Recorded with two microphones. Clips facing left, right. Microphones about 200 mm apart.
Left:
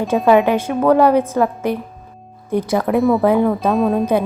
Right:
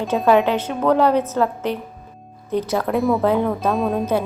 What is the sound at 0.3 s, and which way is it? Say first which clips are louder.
A woman's voice: left 3 dB; 10° left (ahead or behind).